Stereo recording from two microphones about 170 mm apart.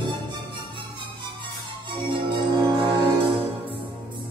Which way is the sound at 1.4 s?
30° right (ahead or behind).